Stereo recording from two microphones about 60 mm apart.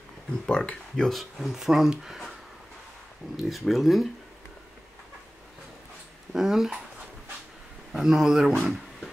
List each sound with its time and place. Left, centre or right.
0.5 s speech: centre
1.1 s speech: centre
3.4 s speech: centre
6.3 s speech: centre
7.9 s speech: centre